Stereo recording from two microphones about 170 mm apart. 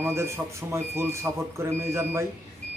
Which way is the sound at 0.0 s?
15° right (ahead or behind).